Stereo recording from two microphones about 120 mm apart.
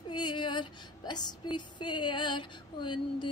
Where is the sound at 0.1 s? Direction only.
40° left (ahead or behind).